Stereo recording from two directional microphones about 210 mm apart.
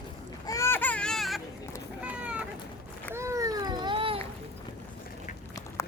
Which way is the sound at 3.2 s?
15° right (ahead or behind).